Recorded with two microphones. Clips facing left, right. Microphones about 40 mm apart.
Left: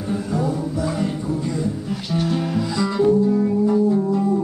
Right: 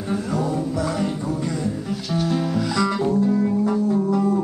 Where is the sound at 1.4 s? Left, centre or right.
Right.